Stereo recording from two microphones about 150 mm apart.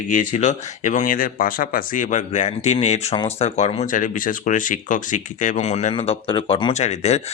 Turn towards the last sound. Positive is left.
turn(degrees=50)  # may be behind; listen again after turning